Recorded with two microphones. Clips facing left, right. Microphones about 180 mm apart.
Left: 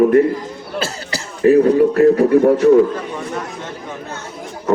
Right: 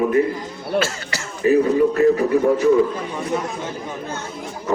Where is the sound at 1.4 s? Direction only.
60° left (ahead or behind).